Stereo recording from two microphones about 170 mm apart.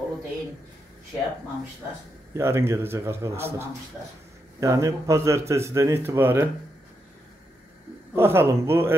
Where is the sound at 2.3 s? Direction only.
15° right (ahead or behind).